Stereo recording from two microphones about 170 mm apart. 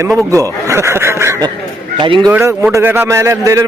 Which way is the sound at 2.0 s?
25° right (ahead or behind).